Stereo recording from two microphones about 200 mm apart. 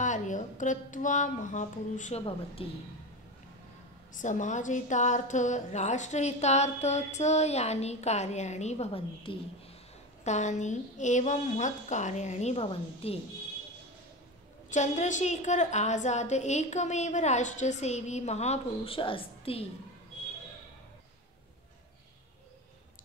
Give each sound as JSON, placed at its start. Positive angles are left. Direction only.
{"t": 0.0, "sound": "a woman's voice", "side_deg": 40}
{"t": 4.1, "sound": "a woman's voice", "side_deg": 40}
{"t": 14.7, "sound": "a woman's voice", "side_deg": 35}